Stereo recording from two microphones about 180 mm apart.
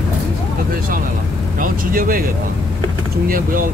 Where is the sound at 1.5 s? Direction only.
50° right (ahead or behind).